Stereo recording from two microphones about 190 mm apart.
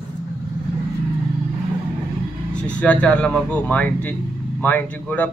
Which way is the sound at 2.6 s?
5° left (ahead or behind).